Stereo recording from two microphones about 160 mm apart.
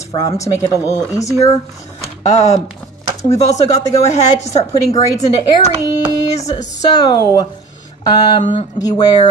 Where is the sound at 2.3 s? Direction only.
45° left (ahead or behind).